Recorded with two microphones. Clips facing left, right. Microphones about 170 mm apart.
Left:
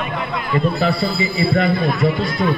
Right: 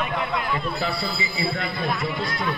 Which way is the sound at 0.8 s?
75° left (ahead or behind).